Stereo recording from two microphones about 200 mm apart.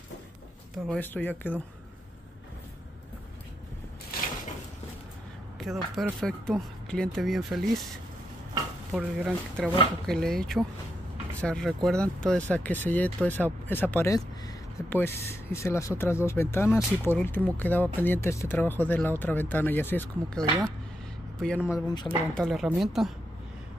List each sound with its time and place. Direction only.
0.8 s speech: 10° left (ahead or behind)
5.6 s speech: centre (ahead or behind)
8.9 s speech: centre (ahead or behind)
21.6 s speech: 15° left (ahead or behind)
22.3 s speech: centre (ahead or behind)